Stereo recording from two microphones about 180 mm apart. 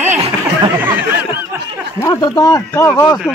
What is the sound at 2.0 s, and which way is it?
Speech, 20° left (ahead or behind).